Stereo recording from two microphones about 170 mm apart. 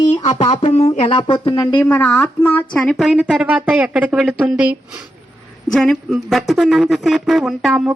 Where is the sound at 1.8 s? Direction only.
10° left (ahead or behind).